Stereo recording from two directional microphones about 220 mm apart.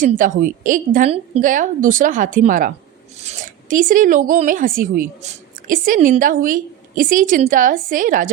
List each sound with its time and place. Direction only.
0.0 s speech: 40° right (ahead or behind)